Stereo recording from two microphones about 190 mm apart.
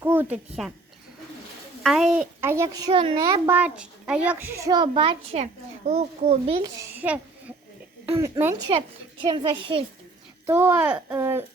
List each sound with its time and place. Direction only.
0.0 s speech: 10° right (ahead or behind)
1.8 s a woman's voice: centre (ahead or behind)
2.9 s a child's voice: 25° right (ahead or behind)
3.4 s a child's voice: 10° right (ahead or behind); by 6.7 s 30° right (ahead or behind)
6.7 s a woman's voice: 10° right (ahead or behind)
9.2 s a child's voice: 25° right (ahead or behind)
10.4 s speech: 10° right (ahead or behind)